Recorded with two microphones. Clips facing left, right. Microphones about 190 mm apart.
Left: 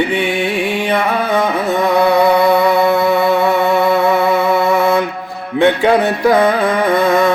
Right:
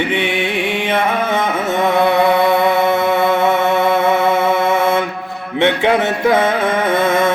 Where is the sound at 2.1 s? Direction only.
40° left (ahead or behind).